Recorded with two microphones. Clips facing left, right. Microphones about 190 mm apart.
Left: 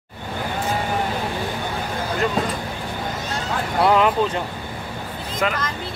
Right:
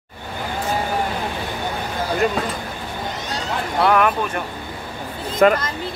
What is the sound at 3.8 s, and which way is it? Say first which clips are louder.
Speech: left 1 dB; 20° left (ahead or behind).